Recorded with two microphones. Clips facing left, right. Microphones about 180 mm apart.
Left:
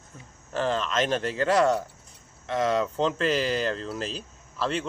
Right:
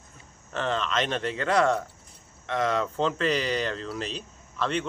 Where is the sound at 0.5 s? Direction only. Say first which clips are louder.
Left 2 dB; 35° left (ahead or behind).